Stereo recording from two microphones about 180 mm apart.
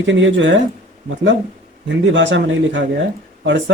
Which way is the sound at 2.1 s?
90° right.